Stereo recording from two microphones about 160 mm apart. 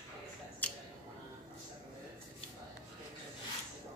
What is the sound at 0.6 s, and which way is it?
Finger snapping, 10° left (ahead or behind).